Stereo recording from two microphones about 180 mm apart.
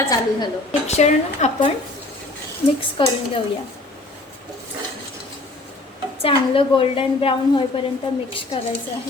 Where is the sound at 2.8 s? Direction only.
30° left (ahead or behind).